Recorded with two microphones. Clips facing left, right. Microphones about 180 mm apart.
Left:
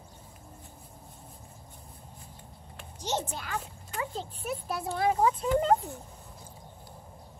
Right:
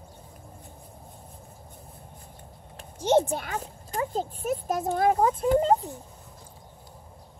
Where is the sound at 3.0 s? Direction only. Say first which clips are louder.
Right 11 dB; 55° right (ahead or behind).